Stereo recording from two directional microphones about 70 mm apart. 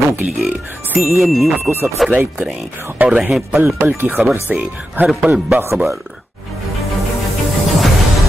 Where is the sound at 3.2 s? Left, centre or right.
Centre.